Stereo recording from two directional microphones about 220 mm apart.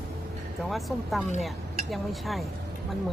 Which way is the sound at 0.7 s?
Centre (ahead or behind).